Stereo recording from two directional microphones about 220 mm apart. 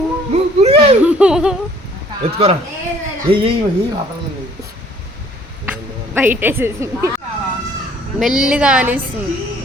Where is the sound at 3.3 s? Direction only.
25° right (ahead or behind).